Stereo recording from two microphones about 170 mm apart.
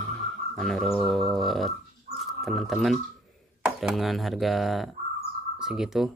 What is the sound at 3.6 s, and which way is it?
Speech, centre (ahead or behind).